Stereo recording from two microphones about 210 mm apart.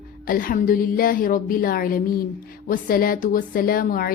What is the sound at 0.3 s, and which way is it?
Speech, 40° left (ahead or behind).